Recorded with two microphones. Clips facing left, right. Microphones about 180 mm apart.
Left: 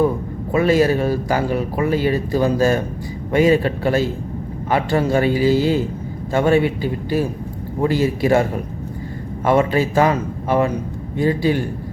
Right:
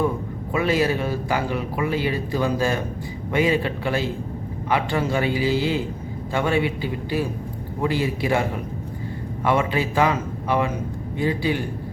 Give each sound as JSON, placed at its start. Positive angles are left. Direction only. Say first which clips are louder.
{"t": 0.5, "sound": "speech", "louder": "left 6 dB", "side_deg": 45}